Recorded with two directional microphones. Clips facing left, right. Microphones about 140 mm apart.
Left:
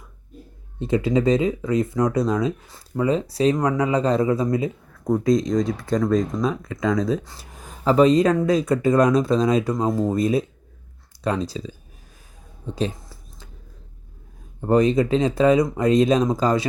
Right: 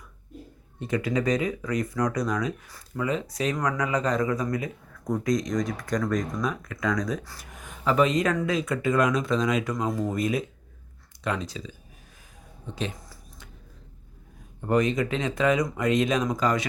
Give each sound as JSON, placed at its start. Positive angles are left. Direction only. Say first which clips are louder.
{"t": 0.8, "sound": "speech", "louder": "left 6 dB", "side_deg": 25}
{"t": 12.6, "sound": "a sound", "louder": "left 7 dB", "side_deg": 35}
{"t": 14.6, "sound": "speech", "louder": "left 6 dB", "side_deg": 30}